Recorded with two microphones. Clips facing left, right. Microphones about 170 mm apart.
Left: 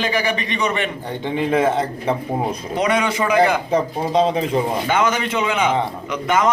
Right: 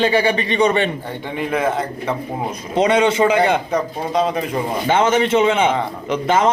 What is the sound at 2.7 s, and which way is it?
Speech, 25° right (ahead or behind).